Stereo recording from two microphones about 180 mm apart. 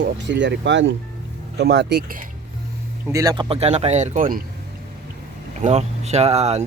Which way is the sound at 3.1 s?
20° right (ahead or behind).